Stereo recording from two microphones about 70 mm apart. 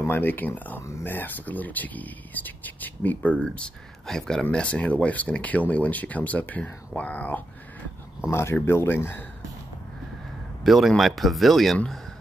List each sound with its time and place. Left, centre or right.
0.0 s speech: left; by 3.7 s centre
4.0 s speech: centre; by 7.4 s left
8.3 s speech: left
10.6 s speech: centre